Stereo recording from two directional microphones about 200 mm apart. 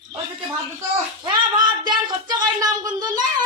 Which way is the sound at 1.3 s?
20° right (ahead or behind).